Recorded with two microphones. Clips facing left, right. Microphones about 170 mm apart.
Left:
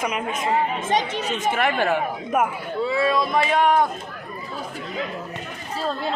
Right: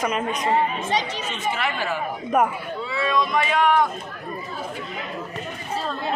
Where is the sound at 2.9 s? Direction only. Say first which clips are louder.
Left 1 dB; 35° left (ahead or behind).